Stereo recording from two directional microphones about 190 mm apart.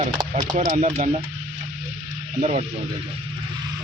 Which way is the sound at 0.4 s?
40° right (ahead or behind).